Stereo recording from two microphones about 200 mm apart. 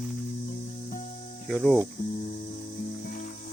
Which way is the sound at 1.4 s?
Centre (ahead or behind).